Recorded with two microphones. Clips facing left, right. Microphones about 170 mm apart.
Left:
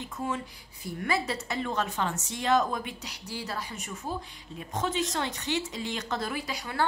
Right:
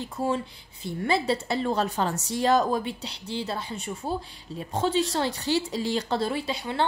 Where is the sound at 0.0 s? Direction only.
35° right (ahead or behind).